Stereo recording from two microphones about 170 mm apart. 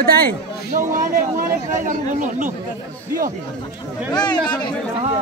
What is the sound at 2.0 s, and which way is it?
Speech, 50° right (ahead or behind).